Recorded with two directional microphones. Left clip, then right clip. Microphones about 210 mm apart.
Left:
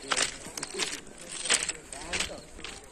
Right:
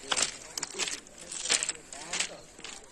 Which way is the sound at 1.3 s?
15° left (ahead or behind).